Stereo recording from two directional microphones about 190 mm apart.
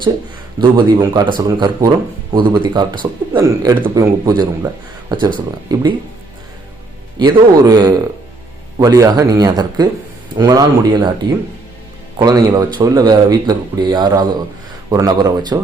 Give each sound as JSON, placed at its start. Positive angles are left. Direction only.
{"t": 0.6, "sound": "a man's voice", "side_deg": -20}
{"t": 7.2, "sound": "a man's voice", "side_deg": -20}